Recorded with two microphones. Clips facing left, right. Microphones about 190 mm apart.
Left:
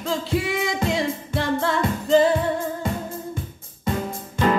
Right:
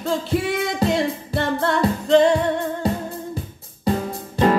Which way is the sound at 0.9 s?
Centre (ahead or behind).